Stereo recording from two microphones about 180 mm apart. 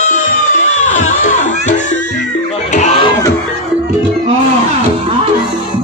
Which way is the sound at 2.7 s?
35° left (ahead or behind).